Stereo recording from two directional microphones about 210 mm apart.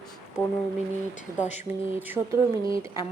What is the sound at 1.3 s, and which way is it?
Speech, 35° left (ahead or behind).